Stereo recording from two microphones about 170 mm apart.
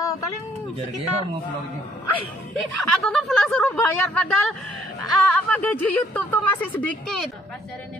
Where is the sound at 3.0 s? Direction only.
Centre (ahead or behind).